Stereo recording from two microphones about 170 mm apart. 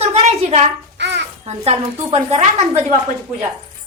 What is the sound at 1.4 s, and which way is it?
A woman's voice, 40° right (ahead or behind).